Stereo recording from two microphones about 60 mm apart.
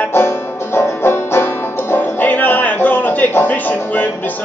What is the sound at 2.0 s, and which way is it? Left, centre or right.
Music, left.